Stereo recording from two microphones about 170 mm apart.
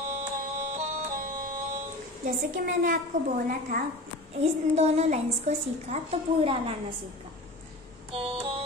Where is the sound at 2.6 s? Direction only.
55° right (ahead or behind).